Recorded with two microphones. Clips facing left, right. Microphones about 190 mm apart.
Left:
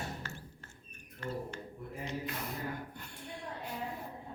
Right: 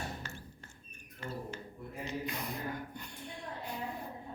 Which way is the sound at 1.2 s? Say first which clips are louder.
Left 3 dB; 10° right (ahead or behind).